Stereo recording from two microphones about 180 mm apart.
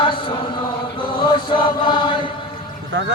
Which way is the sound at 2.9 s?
90° right.